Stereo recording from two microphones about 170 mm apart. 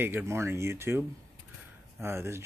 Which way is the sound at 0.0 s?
15° right (ahead or behind).